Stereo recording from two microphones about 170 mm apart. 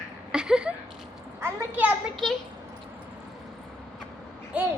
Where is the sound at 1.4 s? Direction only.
15° right (ahead or behind).